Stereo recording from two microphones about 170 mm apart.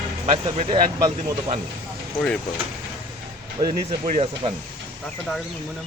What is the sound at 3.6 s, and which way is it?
Speech, 25° right (ahead or behind).